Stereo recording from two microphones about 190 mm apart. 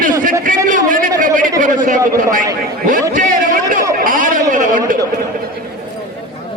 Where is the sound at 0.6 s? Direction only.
45° right (ahead or behind).